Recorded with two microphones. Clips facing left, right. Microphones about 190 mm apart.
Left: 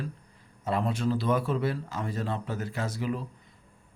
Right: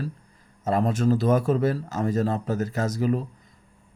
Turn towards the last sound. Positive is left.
turn(degrees=-40)  # may be behind; listen again after turning